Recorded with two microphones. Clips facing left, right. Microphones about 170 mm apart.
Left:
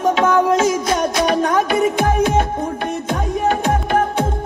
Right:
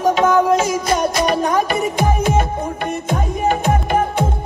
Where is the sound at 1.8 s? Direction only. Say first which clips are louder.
Left 2 dB; 5° right (ahead or behind).